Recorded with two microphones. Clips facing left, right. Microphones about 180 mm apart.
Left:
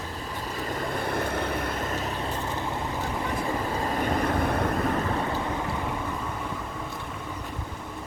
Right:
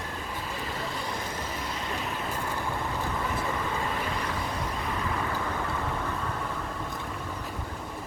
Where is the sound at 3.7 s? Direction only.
40° left (ahead or behind).